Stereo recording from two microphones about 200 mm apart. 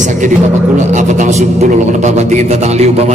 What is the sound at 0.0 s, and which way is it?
Music, 40° right (ahead or behind).